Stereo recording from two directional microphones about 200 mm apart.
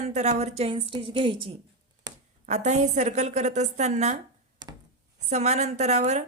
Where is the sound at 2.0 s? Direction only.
20° right (ahead or behind).